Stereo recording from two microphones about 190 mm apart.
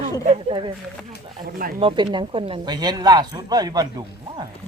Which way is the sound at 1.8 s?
25° right (ahead or behind).